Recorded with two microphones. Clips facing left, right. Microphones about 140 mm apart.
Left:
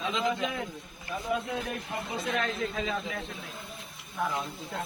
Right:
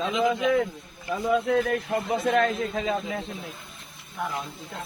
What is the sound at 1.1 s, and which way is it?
Speech, 85° right.